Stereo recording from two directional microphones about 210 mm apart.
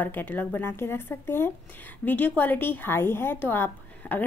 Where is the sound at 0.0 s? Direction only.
10° left (ahead or behind).